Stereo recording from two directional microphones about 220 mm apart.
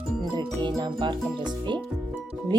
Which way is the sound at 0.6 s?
20° right (ahead or behind).